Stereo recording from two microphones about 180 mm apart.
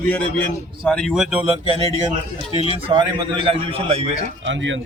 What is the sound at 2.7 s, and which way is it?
A man's voice, 30° right (ahead or behind).